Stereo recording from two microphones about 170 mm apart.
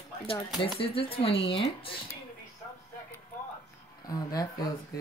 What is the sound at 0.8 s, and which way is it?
Speech, 30° left (ahead or behind).